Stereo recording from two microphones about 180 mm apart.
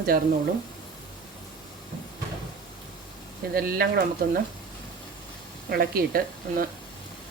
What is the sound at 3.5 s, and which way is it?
Speech, 55° right (ahead or behind).